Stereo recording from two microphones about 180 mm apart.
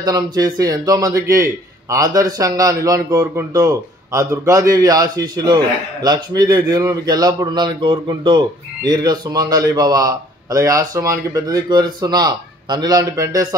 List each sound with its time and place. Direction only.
0.0 s a man's voice: 20° right (ahead or behind)